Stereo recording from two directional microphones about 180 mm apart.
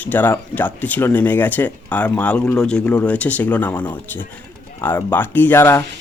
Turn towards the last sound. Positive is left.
turn(degrees=15)  # may be behind; listen again after turning